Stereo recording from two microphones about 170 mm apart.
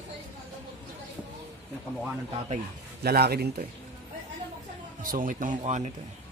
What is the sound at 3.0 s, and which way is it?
Speech, 65° right (ahead or behind).